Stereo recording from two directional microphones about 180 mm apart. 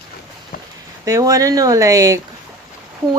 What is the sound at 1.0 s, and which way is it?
Speech, 20° right (ahead or behind).